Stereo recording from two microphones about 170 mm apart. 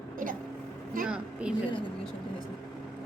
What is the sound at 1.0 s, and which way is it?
Speech, 5° right (ahead or behind).